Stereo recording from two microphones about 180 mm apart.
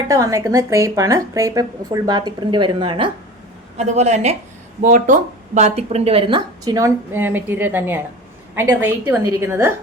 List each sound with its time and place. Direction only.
0.1 s a woman's voice: 15° right (ahead or behind)
3.8 s a woman's voice: 40° right (ahead or behind); by 9.7 s 15° right (ahead or behind)